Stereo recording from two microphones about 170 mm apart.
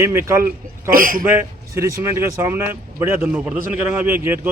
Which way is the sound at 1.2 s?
15° right (ahead or behind).